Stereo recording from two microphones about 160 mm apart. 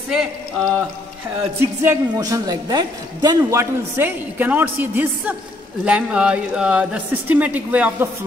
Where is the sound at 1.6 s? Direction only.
15° right (ahead or behind).